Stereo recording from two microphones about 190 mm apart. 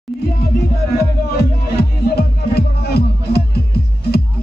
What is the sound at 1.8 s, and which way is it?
Music, 55° left (ahead or behind).